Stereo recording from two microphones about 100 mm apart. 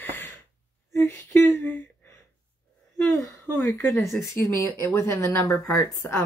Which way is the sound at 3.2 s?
25° left (ahead or behind).